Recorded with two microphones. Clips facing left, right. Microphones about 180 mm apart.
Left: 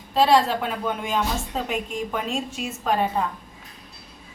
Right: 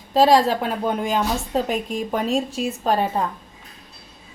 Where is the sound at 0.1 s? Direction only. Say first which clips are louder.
Right 3 dB; 40° right (ahead or behind).